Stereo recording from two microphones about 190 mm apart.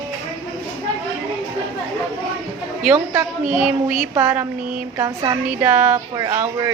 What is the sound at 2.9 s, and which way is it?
A woman's voice, 10° right (ahead or behind).